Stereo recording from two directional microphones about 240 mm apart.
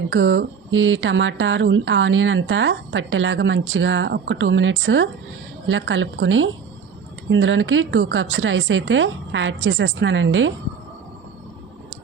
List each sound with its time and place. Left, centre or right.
0.1 s speech: right